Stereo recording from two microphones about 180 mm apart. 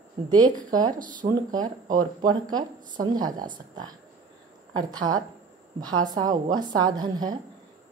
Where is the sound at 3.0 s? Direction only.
20° right (ahead or behind).